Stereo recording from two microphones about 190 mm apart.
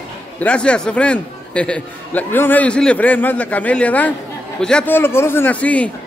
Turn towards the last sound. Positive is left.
turn(degrees=5)  # may be behind; listen again after turning